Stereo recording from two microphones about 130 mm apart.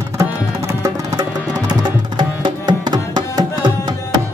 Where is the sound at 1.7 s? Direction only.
35° right (ahead or behind).